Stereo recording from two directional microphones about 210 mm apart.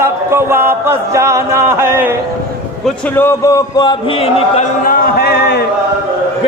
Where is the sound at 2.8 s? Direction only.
10° left (ahead or behind); by 4.7 s 30° left (ahead or behind).